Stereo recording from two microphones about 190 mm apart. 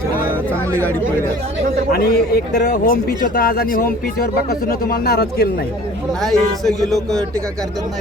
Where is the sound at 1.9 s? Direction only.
55° left (ahead or behind).